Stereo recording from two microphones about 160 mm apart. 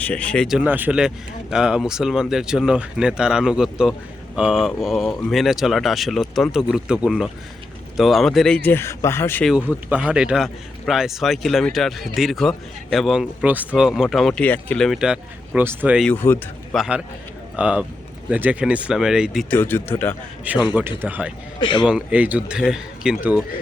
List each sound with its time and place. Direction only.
0.0 s speech: 10° left (ahead or behind)
0.4 s a man's voice: 5° right (ahead or behind); by 9.4 s 15° left (ahead or behind)
9.4 s a man's voice: centre (ahead or behind)
16.0 s speech: 15° left (ahead or behind)
16.7 s a man's voice: 5° right (ahead or behind)
19.5 s speech: 10° left (ahead or behind)
20.5 s speech: 10° right (ahead or behind)
21.6 s speech: 30° left (ahead or behind)
21.8 s speech: 10° right (ahead or behind)